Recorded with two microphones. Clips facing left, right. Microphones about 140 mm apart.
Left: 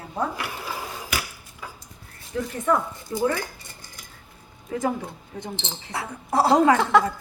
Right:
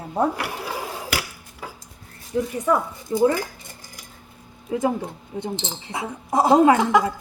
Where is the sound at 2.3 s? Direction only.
15° right (ahead or behind).